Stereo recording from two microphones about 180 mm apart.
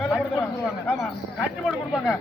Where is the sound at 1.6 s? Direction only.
5° right (ahead or behind).